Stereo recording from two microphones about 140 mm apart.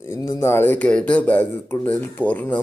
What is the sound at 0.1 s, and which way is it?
Speech, 25° left (ahead or behind).